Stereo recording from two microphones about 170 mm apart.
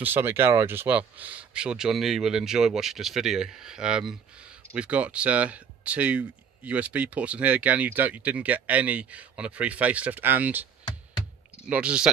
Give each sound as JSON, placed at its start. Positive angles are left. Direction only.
{"t": 0.0, "sound": "speech", "side_deg": -15}
{"t": 11.6, "sound": "speech", "side_deg": -5}